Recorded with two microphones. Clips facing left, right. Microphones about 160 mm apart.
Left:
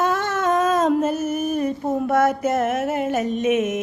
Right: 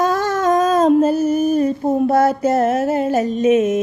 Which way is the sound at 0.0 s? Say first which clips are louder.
Right 4 dB; 35° right (ahead or behind).